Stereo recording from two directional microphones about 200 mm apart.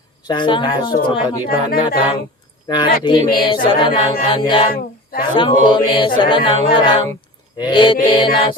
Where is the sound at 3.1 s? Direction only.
25° left (ahead or behind).